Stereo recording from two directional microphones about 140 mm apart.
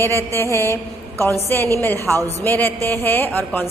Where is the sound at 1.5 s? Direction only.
15° left (ahead or behind).